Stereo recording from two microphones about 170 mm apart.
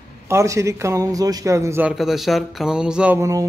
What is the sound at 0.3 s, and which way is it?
A man's voice, 15° right (ahead or behind).